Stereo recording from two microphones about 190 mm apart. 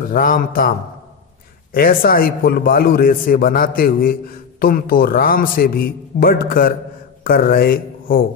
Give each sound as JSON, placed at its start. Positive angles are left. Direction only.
{"t": 0.1, "sound": "a man's voice", "side_deg": 45}